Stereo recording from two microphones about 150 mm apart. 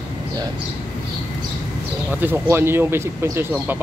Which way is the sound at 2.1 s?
10° right (ahead or behind).